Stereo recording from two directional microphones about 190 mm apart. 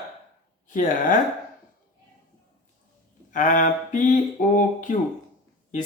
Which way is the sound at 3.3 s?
45° left (ahead or behind).